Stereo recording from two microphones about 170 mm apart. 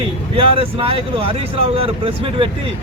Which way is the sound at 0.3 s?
30° right (ahead or behind).